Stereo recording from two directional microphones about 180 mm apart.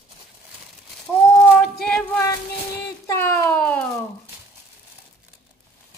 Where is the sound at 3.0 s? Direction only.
15° left (ahead or behind).